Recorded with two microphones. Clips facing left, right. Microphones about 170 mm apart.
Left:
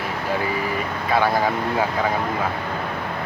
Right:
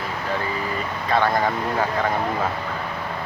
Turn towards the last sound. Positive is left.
turn(degrees=5)  # may be behind; listen again after turning